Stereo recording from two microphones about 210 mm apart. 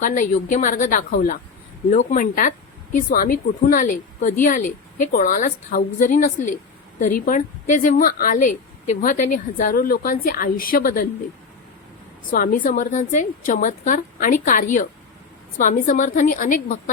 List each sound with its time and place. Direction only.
0.0 s a woman's voice: 40° left (ahead or behind)
12.3 s a woman's voice: 40° left (ahead or behind)